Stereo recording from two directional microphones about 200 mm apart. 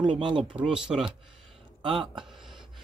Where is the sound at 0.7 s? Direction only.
5° right (ahead or behind).